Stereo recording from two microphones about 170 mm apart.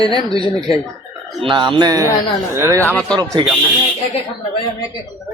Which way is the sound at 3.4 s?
30° right (ahead or behind).